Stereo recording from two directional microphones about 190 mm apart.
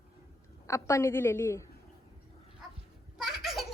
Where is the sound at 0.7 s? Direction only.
15° left (ahead or behind).